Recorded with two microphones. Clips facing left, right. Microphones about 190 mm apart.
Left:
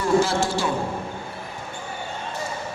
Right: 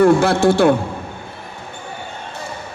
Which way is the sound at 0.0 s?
60° right (ahead or behind).